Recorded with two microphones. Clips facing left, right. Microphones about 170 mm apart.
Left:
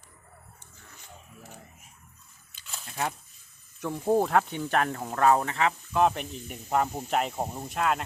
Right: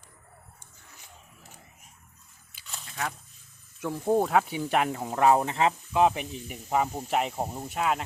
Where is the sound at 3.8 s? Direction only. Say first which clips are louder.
Even; centre (ahead or behind); by 5.7 s 25° right (ahead or behind).